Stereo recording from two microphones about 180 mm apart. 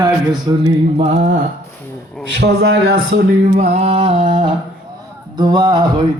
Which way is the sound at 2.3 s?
70° right (ahead or behind).